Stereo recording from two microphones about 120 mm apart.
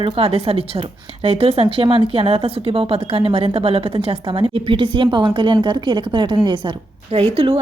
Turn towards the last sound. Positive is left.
turn(degrees=-55)  # may be behind; listen again after turning